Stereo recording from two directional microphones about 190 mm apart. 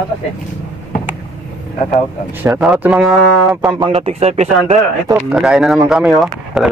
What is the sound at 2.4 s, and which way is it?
Speech, 10° right (ahead or behind).